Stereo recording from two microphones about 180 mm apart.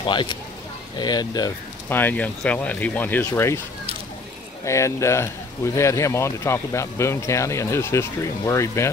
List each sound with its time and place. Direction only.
0.0 s speech: 25° left (ahead or behind)
1.9 s speech: 10° left (ahead or behind)
4.6 s speech: 15° left (ahead or behind)